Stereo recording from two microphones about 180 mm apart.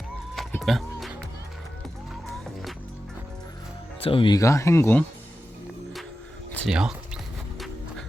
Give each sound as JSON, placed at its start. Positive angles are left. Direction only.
{"t": 0.3, "sound": "music", "side_deg": 0}
{"t": 2.2, "sound": "music", "side_deg": 0}
{"t": 4.0, "sound": "speech", "side_deg": 30}
{"t": 4.4, "sound": "speech", "side_deg": 15}
{"t": 6.7, "sound": "speech", "side_deg": -5}